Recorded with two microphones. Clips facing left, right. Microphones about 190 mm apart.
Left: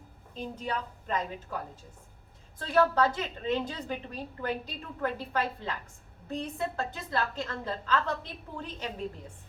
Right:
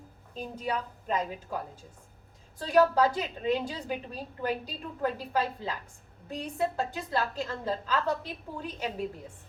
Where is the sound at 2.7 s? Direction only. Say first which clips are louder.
Right 2 dB; 10° right (ahead or behind).